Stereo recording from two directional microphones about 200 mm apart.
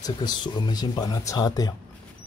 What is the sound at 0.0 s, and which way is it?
Speech, 20° left (ahead or behind).